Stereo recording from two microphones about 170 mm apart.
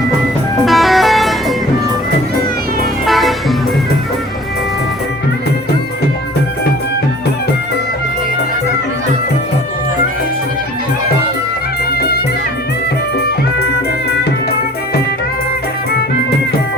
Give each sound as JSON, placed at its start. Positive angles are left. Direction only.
{"t": 0.6, "sound": "music", "side_deg": 0}
{"t": 3.1, "sound": "music", "side_deg": 0}
{"t": 11.9, "sound": "music", "side_deg": 65}